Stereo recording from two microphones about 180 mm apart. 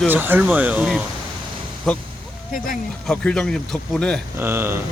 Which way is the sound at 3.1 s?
5° left (ahead or behind).